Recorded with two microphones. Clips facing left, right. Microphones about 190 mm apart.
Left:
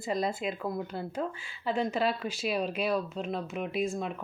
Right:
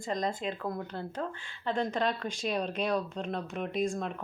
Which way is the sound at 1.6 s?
5° left (ahead or behind).